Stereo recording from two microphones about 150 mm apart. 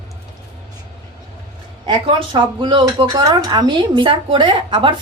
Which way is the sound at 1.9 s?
30° right (ahead or behind).